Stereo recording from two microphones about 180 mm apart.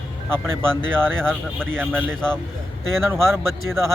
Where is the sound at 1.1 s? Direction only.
5° left (ahead or behind).